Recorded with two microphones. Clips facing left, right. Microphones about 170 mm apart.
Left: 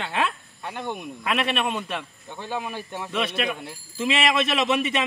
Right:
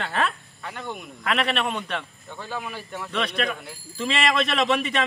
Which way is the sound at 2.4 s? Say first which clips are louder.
Left 3 dB; 20° left (ahead or behind).